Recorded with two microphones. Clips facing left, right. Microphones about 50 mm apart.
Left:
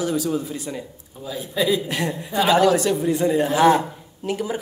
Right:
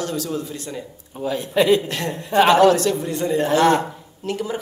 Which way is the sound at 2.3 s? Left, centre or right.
Right.